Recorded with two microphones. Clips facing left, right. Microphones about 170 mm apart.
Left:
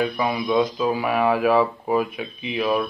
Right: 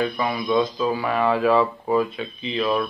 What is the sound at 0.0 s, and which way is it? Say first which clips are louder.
Speech: left 1 dB; 10° left (ahead or behind).